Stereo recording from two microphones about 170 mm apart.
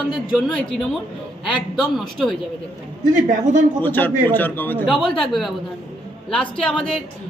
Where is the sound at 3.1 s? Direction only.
50° right (ahead or behind).